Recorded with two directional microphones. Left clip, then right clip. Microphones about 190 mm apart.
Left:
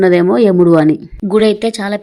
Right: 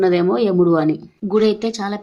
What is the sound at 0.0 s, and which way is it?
A woman's voice, 25° left (ahead or behind).